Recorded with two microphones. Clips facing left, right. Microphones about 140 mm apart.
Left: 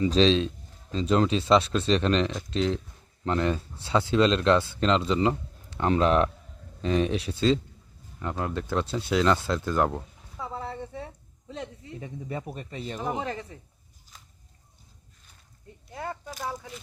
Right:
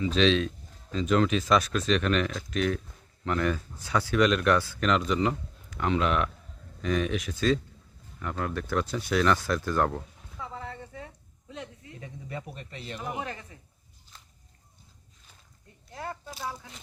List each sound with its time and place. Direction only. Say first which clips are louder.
0.0 s speech: left 2 dB; 35° left (ahead or behind); by 10.0 s 20° left (ahead or behind)
10.4 s a sound: left 4 dB; 30° left (ahead or behind)
11.5 s speech: left 4 dB; 30° left (ahead or behind)